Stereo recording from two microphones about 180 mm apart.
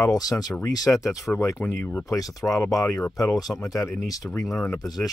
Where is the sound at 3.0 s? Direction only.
5° left (ahead or behind).